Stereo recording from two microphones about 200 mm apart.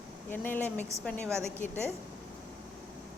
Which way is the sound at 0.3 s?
10° left (ahead or behind).